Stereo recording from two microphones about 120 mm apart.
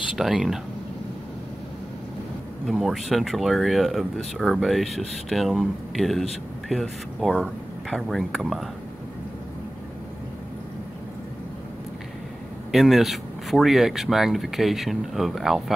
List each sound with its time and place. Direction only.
0.1 s speech: 5° right (ahead or behind)
2.6 s speech: centre (ahead or behind)
12.7 s speech: centre (ahead or behind)